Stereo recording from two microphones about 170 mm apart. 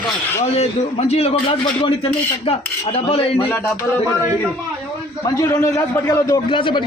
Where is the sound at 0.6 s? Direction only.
40° left (ahead or behind).